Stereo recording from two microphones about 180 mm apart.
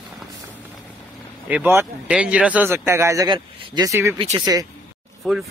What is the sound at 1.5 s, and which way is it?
Speech, 10° right (ahead or behind).